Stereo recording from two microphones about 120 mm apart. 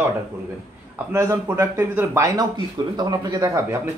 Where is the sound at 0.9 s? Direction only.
20° right (ahead or behind); by 3.4 s 35° right (ahead or behind).